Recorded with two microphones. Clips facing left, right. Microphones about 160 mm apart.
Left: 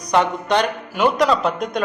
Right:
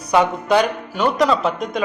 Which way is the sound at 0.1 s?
5° right (ahead or behind).